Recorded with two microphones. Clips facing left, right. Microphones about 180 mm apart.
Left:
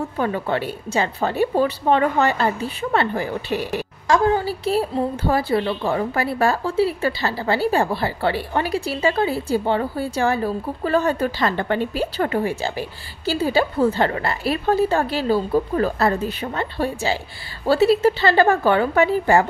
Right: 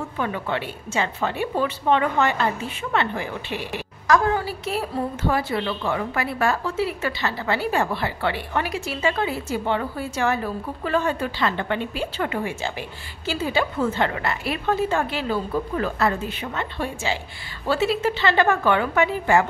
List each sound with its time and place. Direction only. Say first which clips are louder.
0.2 s a woman's voice: left 4 dB; 40° left (ahead or behind)